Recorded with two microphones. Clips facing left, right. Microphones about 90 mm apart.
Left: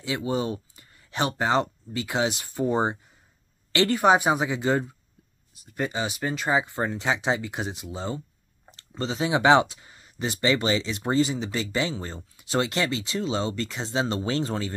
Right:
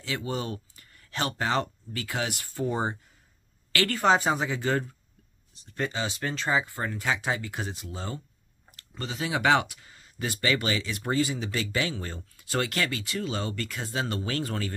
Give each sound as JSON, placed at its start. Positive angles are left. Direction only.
{"t": 0.0, "sound": "speech", "side_deg": 20}